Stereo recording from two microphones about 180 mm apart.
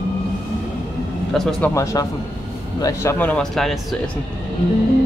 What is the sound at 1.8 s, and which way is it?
Speech, 15° left (ahead or behind).